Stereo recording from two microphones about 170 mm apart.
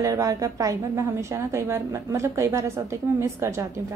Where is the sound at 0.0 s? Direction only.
20° right (ahead or behind).